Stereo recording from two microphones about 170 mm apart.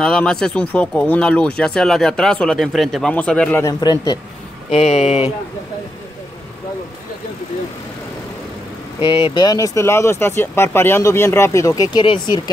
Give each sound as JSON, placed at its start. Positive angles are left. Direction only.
{"t": 0.0, "sound": "speech", "side_deg": 5}
{"t": 3.6, "sound": "speech", "side_deg": 25}
{"t": 4.6, "sound": "speech", "side_deg": 40}
{"t": 9.0, "sound": "speech", "side_deg": 30}